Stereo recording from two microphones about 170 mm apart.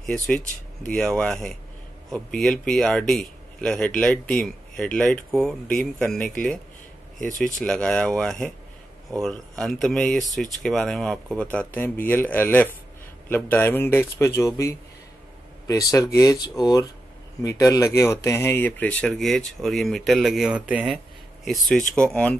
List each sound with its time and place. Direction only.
0.0 s speech: 5° left (ahead or behind)
7.3 s speech: 5° left (ahead or behind)